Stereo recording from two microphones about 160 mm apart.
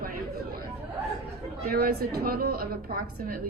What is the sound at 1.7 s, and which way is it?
A woman's voice, 70° right (ahead or behind).